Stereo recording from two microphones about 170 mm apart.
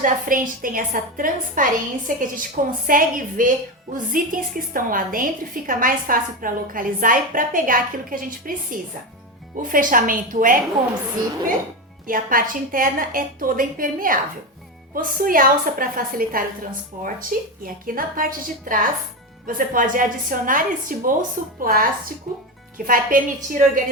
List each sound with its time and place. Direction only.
0.0 s a woman's voice: 50° right (ahead or behind)
12.0 s a woman's voice: 55° right (ahead or behind)
22.9 s a woman's voice: 55° right (ahead or behind)